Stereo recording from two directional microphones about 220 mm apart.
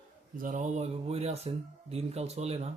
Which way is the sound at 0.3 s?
35° right (ahead or behind).